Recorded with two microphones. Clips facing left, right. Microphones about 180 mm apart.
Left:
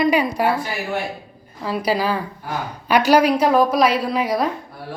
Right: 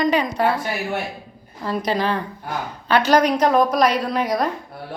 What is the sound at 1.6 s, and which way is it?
A woman's voice, 5° left (ahead or behind).